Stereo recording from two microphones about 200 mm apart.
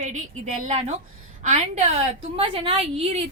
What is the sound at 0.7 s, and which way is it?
Speech, 35° right (ahead or behind).